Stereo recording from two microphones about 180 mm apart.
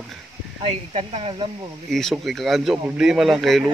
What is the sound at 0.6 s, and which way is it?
Speech, 30° right (ahead or behind).